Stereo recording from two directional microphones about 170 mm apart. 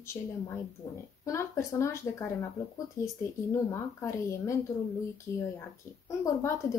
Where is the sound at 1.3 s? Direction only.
15° left (ahead or behind).